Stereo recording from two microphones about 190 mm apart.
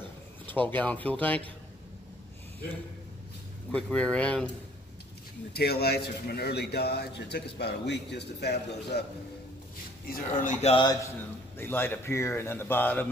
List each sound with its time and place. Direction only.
0.5 s speech: 10° left (ahead or behind)
3.7 s speech: 5° left (ahead or behind)
5.5 s a man's voice: 55° left (ahead or behind)
10.0 s speech: 50° left (ahead or behind)
10.6 s speech: 25° left (ahead or behind)
11.5 s speech: 10° left (ahead or behind)